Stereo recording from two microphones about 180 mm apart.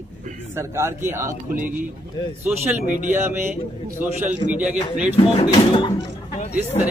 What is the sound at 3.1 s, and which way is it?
Speech, 10° right (ahead or behind).